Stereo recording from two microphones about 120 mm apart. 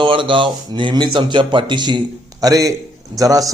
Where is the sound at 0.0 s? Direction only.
45° right (ahead or behind).